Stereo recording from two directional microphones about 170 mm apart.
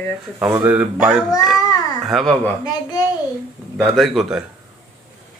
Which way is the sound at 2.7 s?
25° left (ahead or behind).